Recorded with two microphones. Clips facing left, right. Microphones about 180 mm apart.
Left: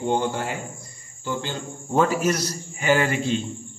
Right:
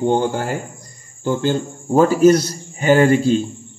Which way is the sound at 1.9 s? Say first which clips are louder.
Right 9 dB; 30° right (ahead or behind).